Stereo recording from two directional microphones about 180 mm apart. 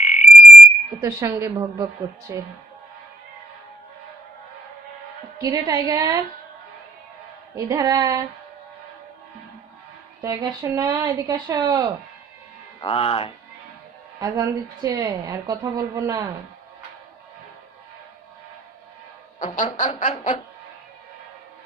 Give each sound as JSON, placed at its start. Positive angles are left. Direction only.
{"t": 0.0, "sound": "frog", "side_deg": 45}
{"t": 1.0, "sound": "a woman's voice", "side_deg": -15}
{"t": 5.4, "sound": "a woman's voice", "side_deg": -20}
{"t": 7.5, "sound": "a woman's voice", "side_deg": -20}
{"t": 10.2, "sound": "a woman's voice", "side_deg": -20}
{"t": 12.8, "sound": "speech", "side_deg": 35}
{"t": 14.2, "sound": "a woman's voice", "side_deg": -20}
{"t": 19.4, "sound": "speech", "side_deg": 45}
{"t": 19.7, "sound": "music", "side_deg": 45}